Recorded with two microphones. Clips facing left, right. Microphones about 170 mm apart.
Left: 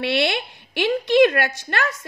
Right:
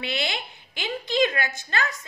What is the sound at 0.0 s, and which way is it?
A woman's voice, 70° left (ahead or behind).